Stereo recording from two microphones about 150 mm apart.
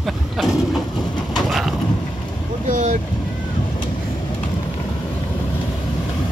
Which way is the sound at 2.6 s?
60° right (ahead or behind).